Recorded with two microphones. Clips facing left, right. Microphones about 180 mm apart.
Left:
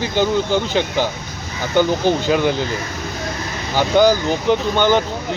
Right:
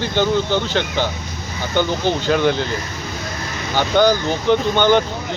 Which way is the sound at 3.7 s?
10° left (ahead or behind).